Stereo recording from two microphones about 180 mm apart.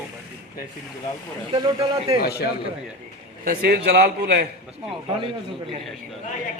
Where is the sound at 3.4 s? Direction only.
60° right (ahead or behind).